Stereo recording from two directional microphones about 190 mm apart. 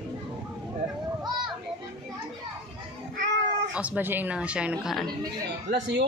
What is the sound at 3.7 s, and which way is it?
A woman's voice, 5° right (ahead or behind).